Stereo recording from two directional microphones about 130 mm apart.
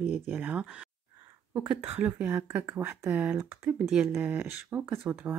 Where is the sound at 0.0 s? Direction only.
15° right (ahead or behind).